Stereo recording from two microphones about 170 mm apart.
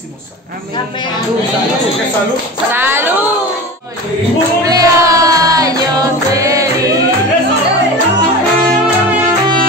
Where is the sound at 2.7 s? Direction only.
10° right (ahead or behind).